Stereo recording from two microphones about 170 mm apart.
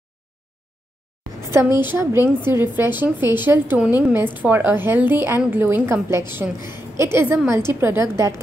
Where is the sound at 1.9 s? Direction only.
15° right (ahead or behind).